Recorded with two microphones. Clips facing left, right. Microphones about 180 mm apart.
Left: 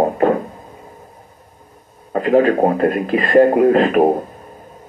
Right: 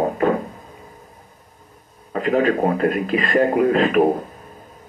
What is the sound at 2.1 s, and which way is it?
Speech, 45° left (ahead or behind).